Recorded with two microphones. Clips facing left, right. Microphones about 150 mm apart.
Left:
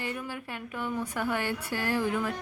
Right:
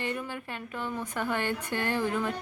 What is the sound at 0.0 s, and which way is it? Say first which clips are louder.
A woman's voice: right 2 dB; 5° left (ahead or behind).